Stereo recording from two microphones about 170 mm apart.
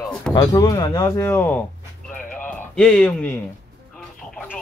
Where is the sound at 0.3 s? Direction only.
20° left (ahead or behind).